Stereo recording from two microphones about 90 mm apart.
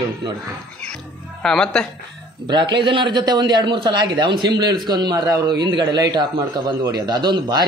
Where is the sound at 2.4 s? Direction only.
55° right (ahead or behind).